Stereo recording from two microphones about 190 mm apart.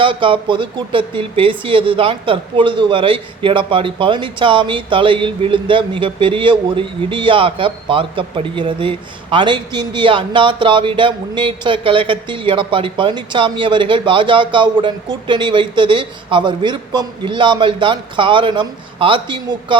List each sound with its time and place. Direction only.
0.0 s speech: 25° right (ahead or behind)